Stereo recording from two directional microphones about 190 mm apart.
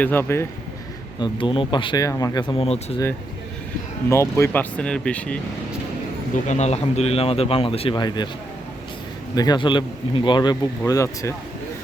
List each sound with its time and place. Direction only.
0.0 s speech: 10° left (ahead or behind)
1.2 s speech: 25° left (ahead or behind)
4.1 s speech: 15° left (ahead or behind)
6.3 s speech: 35° left (ahead or behind)
9.3 s speech: 20° left (ahead or behind)